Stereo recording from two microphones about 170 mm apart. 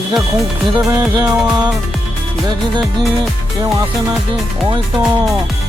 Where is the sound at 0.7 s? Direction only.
25° right (ahead or behind).